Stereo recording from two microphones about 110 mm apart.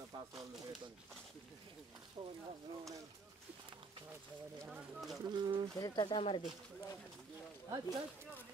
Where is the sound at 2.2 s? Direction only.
40° right (ahead or behind).